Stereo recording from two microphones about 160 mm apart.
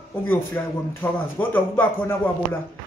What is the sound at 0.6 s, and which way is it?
A man's voice, 15° left (ahead or behind).